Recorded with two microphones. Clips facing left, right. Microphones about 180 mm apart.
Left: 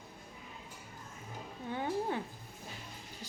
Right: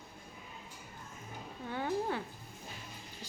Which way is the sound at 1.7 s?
20° left (ahead or behind).